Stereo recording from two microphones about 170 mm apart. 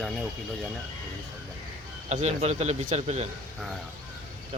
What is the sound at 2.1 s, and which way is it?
Speech, 40° right (ahead or behind).